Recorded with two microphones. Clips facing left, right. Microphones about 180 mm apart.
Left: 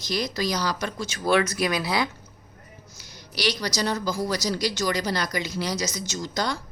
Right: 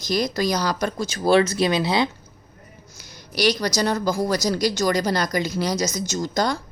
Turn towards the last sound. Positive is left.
turn(degrees=-45)  # may be behind; listen again after turning